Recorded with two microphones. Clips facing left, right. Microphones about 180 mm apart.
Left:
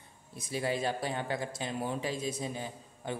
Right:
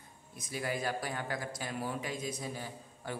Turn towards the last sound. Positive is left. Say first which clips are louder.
# left 3 dB
turn(degrees=20)  # may be behind; listen again after turning